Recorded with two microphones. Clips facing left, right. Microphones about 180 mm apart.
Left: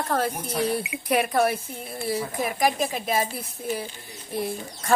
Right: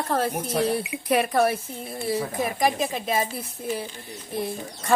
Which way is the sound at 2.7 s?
5° left (ahead or behind).